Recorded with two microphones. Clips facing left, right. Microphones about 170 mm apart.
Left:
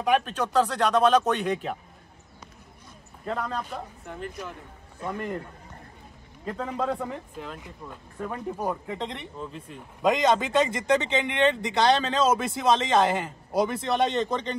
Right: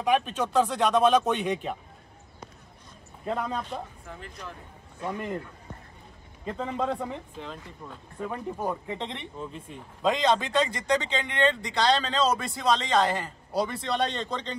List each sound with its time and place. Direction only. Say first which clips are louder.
0.0 s speech: left 1 dB; centre (ahead or behind)
3.3 s speech: even; 5° right (ahead or behind)
5.0 s speech: even; 5° right (ahead or behind)
6.4 s speech: left 1 dB; centre (ahead or behind)
10.0 s speech: left 2 dB; 20° left (ahead or behind)